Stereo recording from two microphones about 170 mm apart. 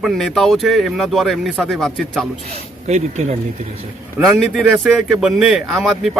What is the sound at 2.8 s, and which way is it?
Speech, 40° right (ahead or behind).